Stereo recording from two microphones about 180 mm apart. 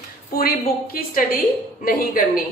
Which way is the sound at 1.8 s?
50° left (ahead or behind).